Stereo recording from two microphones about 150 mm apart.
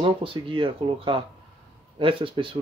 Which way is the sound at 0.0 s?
35° right (ahead or behind).